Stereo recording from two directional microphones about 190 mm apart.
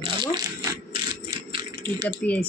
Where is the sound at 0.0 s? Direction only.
25° right (ahead or behind).